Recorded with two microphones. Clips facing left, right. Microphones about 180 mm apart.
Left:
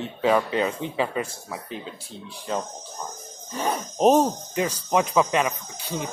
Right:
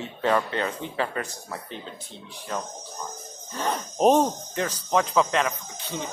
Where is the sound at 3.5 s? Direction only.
10° left (ahead or behind).